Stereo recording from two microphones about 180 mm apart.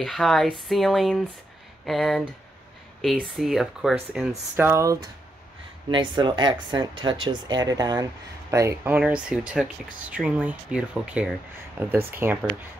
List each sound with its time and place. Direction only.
0.0 s speech: centre (ahead or behind)
4.3 s speech: 15° right (ahead or behind)